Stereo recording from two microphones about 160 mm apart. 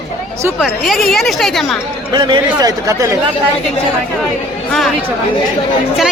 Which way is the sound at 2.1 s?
25° right (ahead or behind).